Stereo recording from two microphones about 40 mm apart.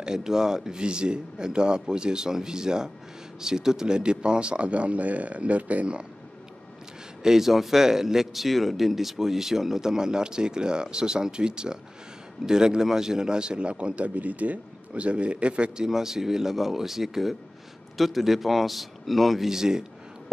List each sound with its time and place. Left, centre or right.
0.0 s a man's voice: centre; by 6.0 s right
7.2 s a man's voice: centre; by 15.7 s right
15.8 s speech: centre